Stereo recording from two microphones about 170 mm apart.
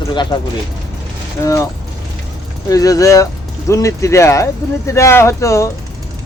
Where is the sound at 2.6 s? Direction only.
20° left (ahead or behind).